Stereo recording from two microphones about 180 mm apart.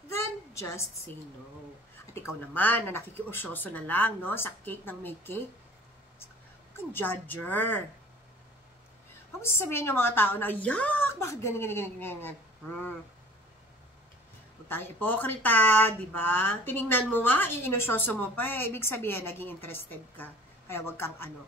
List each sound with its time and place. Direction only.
0.6 s a woman's voice: 15° left (ahead or behind)
2.1 s speech: 10° left (ahead or behind)
6.9 s speech: 10° left (ahead or behind)
9.4 s speech: 15° left (ahead or behind)
14.7 s speech: 10° left (ahead or behind)